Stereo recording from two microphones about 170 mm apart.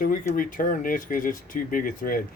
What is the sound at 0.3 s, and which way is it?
Speech, 55° left (ahead or behind).